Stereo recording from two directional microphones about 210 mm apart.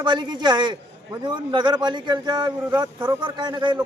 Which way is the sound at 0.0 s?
20° right (ahead or behind).